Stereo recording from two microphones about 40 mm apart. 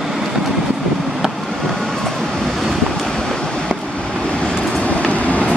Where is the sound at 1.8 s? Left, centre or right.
Centre.